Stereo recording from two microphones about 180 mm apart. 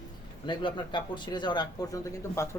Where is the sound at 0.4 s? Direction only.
25° left (ahead or behind).